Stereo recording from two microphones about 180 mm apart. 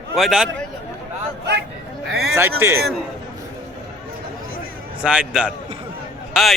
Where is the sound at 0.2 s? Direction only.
Centre (ahead or behind).